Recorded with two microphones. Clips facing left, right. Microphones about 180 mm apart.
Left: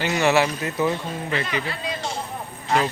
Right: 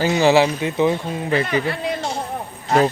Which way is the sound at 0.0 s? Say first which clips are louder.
Right 5 dB; 30° right (ahead or behind).